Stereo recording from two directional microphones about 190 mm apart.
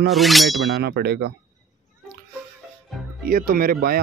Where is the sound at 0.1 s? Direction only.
Centre (ahead or behind).